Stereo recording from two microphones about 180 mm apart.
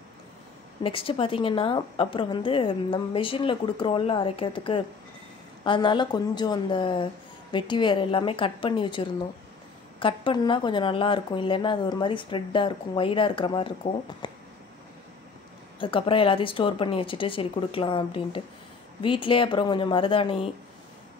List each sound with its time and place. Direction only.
0.8 s a woman's voice: 30° left (ahead or behind)
15.8 s a woman's voice: 30° left (ahead or behind)